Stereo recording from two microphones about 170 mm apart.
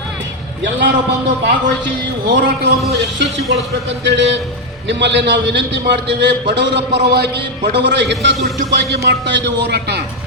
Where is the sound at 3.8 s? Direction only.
90° right.